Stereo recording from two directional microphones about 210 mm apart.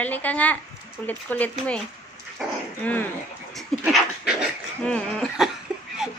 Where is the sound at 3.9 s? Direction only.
Centre (ahead or behind).